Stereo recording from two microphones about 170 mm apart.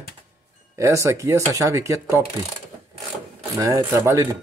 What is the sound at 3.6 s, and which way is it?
Speech, 20° right (ahead or behind).